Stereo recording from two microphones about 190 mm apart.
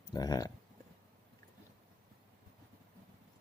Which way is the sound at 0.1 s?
20° left (ahead or behind).